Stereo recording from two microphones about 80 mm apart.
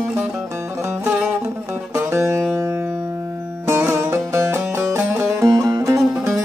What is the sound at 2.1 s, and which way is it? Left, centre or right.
Music, right.